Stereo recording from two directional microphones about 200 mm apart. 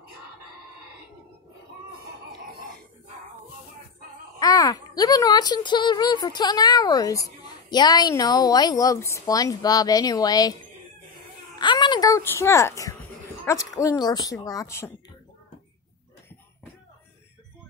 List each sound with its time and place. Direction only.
4.4 s a child's voice: 15° left (ahead or behind)
11.5 s baby cry: 20° left (ahead or behind)
13.5 s a woman's voice: 15° left (ahead or behind)